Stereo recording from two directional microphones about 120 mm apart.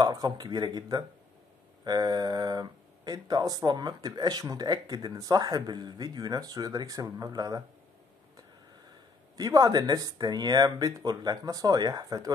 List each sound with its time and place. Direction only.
0.0 s speech: 35° right (ahead or behind)
9.4 s speech: 30° right (ahead or behind)